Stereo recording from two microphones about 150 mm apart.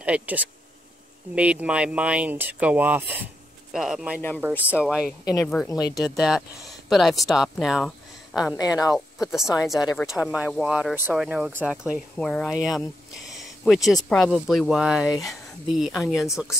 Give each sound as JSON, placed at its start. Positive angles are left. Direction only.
{"t": 0.0, "sound": "speech", "side_deg": -10}
{"t": 5.2, "sound": "speech", "side_deg": 25}
{"t": 5.5, "sound": "speech", "side_deg": 0}
{"t": 8.5, "sound": "speech", "side_deg": 25}
{"t": 8.9, "sound": "speech", "side_deg": -5}
{"t": 13.8, "sound": "speech", "side_deg": 0}